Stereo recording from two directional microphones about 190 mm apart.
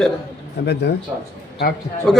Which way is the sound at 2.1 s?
5° left (ahead or behind).